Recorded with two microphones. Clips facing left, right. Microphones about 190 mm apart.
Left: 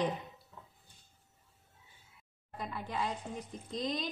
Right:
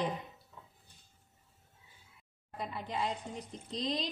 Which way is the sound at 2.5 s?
20° right (ahead or behind).